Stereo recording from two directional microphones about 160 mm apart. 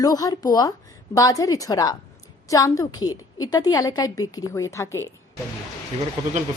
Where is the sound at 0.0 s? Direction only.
25° left (ahead or behind).